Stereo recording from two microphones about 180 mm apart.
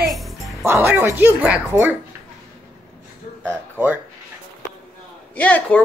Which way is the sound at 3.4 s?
10° right (ahead or behind).